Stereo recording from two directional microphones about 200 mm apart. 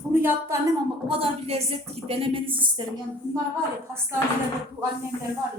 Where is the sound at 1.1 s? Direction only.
30° right (ahead or behind).